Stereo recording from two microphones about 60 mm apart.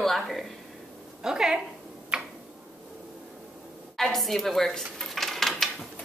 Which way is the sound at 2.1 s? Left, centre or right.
Centre.